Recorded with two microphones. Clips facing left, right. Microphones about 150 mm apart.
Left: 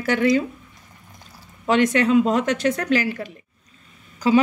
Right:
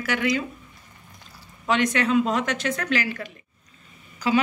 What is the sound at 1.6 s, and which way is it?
A woman's voice, 25° left (ahead or behind).